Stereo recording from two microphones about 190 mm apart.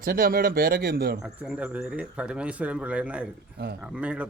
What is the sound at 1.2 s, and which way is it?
A man's voice, 5° right (ahead or behind).